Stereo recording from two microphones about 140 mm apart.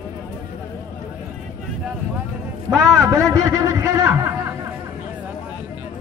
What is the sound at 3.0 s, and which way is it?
A man's voice, 20° right (ahead or behind).